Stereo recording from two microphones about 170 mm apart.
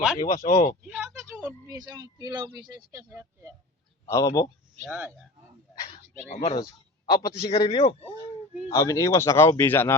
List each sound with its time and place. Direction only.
0.3 s speech: 45° left (ahead or behind)
0.9 s speech: 10° right (ahead or behind)
4.0 s speech: 20° left (ahead or behind)
4.8 s speech: 10° right (ahead or behind)
6.3 s speech: 40° left (ahead or behind)
7.1 s a man's voice: 25° left (ahead or behind)
7.4 s speech: 35° left (ahead or behind)
8.7 s speech: 20° left (ahead or behind)